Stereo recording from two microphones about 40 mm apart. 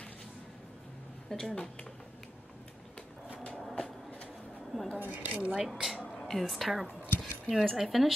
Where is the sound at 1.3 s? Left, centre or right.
Centre.